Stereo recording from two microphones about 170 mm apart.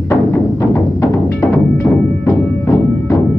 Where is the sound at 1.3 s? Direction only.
15° left (ahead or behind).